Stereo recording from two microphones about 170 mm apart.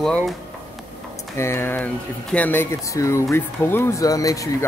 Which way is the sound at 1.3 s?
15° left (ahead or behind).